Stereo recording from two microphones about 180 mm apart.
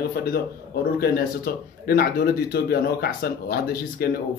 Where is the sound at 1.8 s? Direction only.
60° left (ahead or behind).